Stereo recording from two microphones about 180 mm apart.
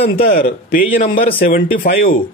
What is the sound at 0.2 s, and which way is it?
Speech, 55° left (ahead or behind).